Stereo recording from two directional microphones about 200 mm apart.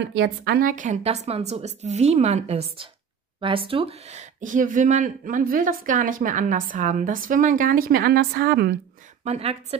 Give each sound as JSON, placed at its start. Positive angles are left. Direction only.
{"t": 0.0, "sound": "speech", "side_deg": -65}
{"t": 9.2, "sound": "speech", "side_deg": -30}